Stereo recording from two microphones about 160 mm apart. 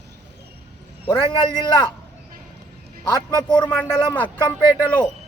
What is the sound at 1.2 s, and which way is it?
Speech, 30° left (ahead or behind).